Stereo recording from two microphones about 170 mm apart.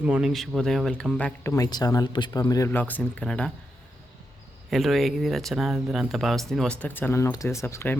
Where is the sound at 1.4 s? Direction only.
20° left (ahead or behind).